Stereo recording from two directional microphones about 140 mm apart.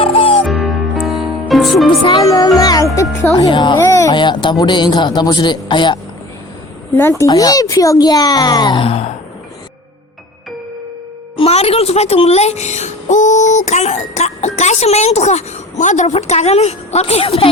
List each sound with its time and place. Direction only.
0.0 s music: 45° left (ahead or behind)
0.4 s music: centre (ahead or behind)
2.2 s speech: 25° left (ahead or behind)
3.3 s a man's voice: 35° left (ahead or behind)
3.8 s a child's voice: 20° left (ahead or behind)
4.1 s a man's voice: 35° left (ahead or behind)
6.9 s a child's voice: 20° left (ahead or behind)
8.9 s gasp: 45° left (ahead or behind)
11.3 s a woman's voice: 45° left (ahead or behind)